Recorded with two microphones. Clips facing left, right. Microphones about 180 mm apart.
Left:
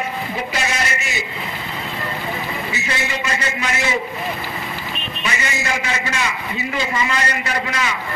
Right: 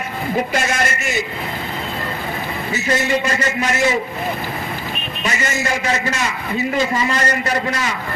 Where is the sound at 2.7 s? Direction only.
45° right (ahead or behind).